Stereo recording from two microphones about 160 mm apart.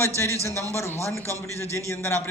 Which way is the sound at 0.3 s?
20° right (ahead or behind).